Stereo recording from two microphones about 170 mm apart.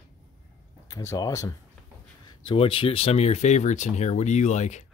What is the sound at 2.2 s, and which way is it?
Speech, 30° left (ahead or behind).